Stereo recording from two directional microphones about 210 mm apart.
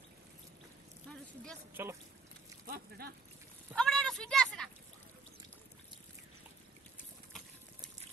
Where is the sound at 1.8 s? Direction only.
10° right (ahead or behind).